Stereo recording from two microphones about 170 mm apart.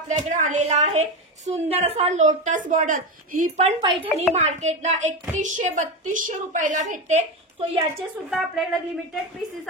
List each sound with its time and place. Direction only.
0.2 s a woman's voice: 50° right (ahead or behind)
3.8 s a woman's voice: 30° right (ahead or behind)
8.3 s speech: centre (ahead or behind)